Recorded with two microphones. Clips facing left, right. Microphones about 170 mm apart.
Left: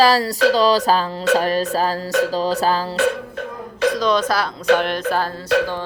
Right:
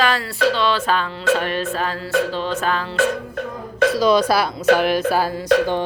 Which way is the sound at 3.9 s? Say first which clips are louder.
Right 5 dB; 10° right (ahead or behind).